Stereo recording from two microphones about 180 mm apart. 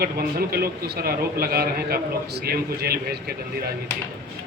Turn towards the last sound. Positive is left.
turn(degrees=-60)  # may be behind; listen again after turning